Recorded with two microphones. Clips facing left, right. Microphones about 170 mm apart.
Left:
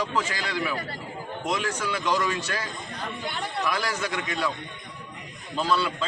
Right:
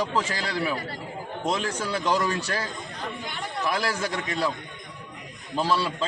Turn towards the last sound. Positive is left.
turn(degrees=-30)  # may be behind; listen again after turning